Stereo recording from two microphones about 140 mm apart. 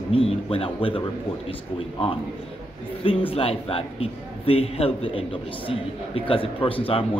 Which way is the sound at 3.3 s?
40° left (ahead or behind).